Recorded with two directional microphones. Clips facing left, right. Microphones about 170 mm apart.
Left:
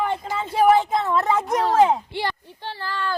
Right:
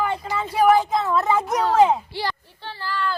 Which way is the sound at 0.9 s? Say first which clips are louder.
Even; centre (ahead or behind).